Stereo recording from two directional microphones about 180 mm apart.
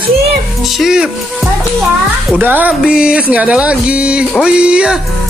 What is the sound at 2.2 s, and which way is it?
Speech, 10° right (ahead or behind).